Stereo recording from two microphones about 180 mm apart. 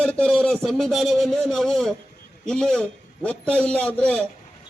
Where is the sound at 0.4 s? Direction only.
Centre (ahead or behind).